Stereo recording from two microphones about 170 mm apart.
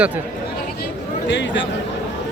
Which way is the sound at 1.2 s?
90° left.